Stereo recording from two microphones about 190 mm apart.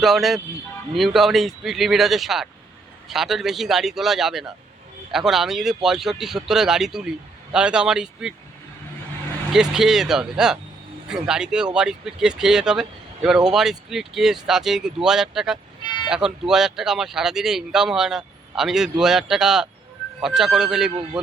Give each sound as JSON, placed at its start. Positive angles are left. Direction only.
{"t": 0.0, "sound": "speech", "side_deg": 0}
{"t": 9.5, "sound": "speech", "side_deg": 0}
{"t": 15.8, "sound": "vehicle", "side_deg": 25}
{"t": 16.0, "sound": "speech", "side_deg": -5}